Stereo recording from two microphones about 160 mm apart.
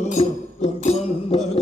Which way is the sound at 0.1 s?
40° left (ahead or behind).